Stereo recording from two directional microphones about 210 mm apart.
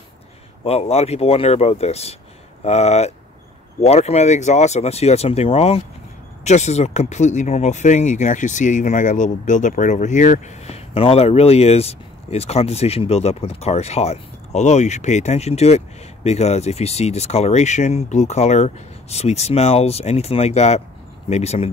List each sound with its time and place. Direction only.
0.7 s speech: 30° left (ahead or behind)